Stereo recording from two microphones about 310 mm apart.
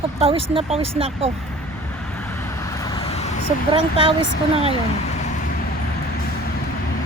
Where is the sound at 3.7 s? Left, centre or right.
Centre.